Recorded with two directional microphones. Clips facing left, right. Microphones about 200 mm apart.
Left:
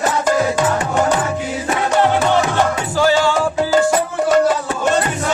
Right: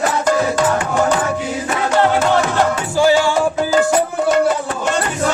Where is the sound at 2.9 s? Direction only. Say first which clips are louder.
Right 1 dB; 10° right (ahead or behind).